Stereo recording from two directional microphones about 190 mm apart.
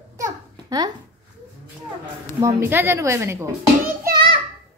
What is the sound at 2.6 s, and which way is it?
Speech, 10° right (ahead or behind).